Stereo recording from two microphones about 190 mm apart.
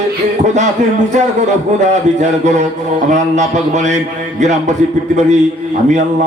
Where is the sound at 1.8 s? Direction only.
40° right (ahead or behind).